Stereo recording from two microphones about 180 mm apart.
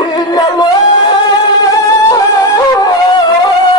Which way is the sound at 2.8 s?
20° left (ahead or behind).